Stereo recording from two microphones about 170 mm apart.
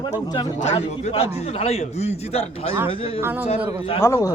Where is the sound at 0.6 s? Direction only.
40° left (ahead or behind).